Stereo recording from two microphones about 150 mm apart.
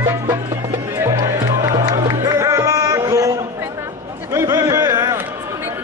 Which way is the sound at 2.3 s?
20° right (ahead or behind).